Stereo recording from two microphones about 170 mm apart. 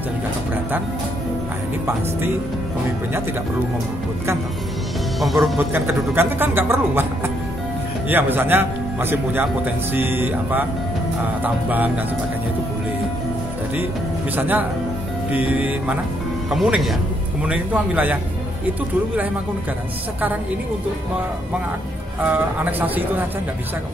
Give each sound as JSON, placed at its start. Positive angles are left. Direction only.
{"t": 5.2, "sound": "speech", "side_deg": 0}
{"t": 5.6, "sound": "speech", "side_deg": -10}
{"t": 8.1, "sound": "speech", "side_deg": -10}
{"t": 14.3, "sound": "speech", "side_deg": -10}
{"t": 22.2, "sound": "speech", "side_deg": -10}